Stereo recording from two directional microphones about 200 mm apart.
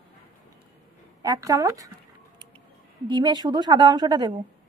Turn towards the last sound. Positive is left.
turn(degrees=-20)  # may be behind; listen again after turning